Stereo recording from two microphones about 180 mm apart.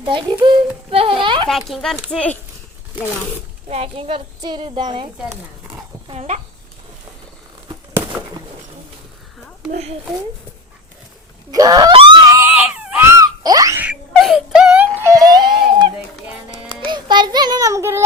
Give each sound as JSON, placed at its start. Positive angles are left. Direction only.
{"t": 0.4, "sound": "speech", "side_deg": -30}
{"t": 1.5, "sound": "speech", "side_deg": 0}
{"t": 3.7, "sound": "speech", "side_deg": -35}
{"t": 6.1, "sound": "speech", "side_deg": -40}
{"t": 9.7, "sound": "speech", "side_deg": -35}
{"t": 11.5, "sound": "screaming", "side_deg": -20}
{"t": 12.8, "sound": "wail", "side_deg": -10}
{"t": 14.2, "sound": "a sound", "side_deg": 0}
{"t": 16.8, "sound": "child singing", "side_deg": -25}